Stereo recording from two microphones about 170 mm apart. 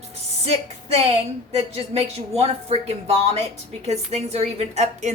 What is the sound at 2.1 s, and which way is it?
A woman's voice, 35° right (ahead or behind).